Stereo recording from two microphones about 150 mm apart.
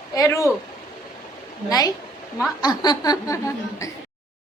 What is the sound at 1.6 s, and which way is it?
A woman's voice, 25° left (ahead or behind).